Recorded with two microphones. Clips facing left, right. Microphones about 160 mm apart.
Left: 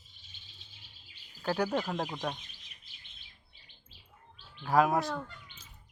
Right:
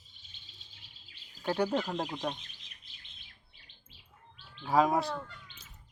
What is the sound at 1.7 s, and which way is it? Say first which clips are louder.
Speech: even; 10° left (ahead or behind).